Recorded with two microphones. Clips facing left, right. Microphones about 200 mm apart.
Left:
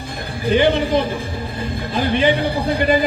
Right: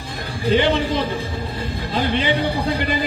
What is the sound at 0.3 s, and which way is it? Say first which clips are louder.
A man's voice: left 2 dB; 55° left (ahead or behind).